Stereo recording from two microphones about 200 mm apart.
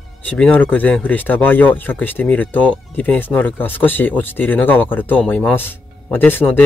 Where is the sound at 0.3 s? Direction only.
5° left (ahead or behind).